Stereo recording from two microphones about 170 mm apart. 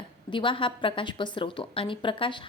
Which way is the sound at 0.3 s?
30° left (ahead or behind).